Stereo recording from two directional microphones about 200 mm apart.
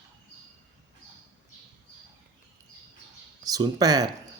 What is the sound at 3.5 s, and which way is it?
Speech, 20° right (ahead or behind).